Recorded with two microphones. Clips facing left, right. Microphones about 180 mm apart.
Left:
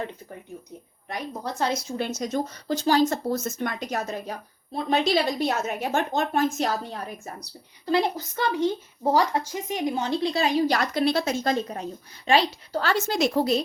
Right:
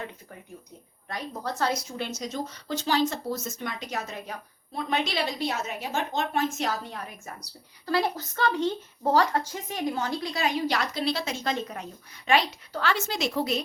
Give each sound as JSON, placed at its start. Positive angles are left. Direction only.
{"t": 1.0, "sound": "a woman's voice", "side_deg": 20}
{"t": 2.0, "sound": "speech", "side_deg": 50}
{"t": 7.9, "sound": "speech", "side_deg": 20}